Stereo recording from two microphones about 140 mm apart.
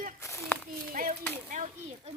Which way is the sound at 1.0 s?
90° right.